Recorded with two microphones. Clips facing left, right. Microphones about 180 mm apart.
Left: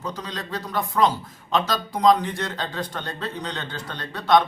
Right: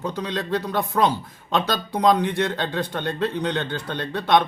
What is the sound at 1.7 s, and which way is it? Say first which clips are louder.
Speech: left 1 dB; 60° right (ahead or behind).